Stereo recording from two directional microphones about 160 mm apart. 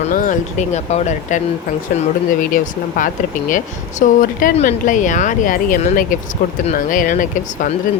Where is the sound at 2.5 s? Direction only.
55° left (ahead or behind).